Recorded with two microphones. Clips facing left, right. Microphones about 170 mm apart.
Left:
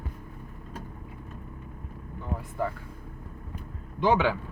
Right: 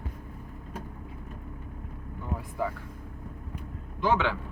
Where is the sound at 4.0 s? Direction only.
15° left (ahead or behind).